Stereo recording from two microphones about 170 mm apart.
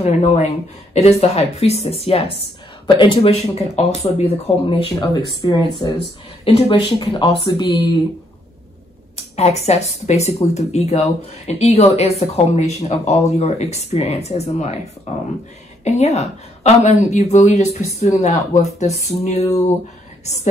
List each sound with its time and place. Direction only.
0.0 s speech: 40° left (ahead or behind)
4.9 s speech: 25° left (ahead or behind)
9.1 s speech: 40° left (ahead or behind)